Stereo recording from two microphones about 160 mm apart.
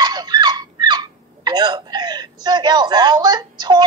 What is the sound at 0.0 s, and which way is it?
Speech, 25° right (ahead or behind).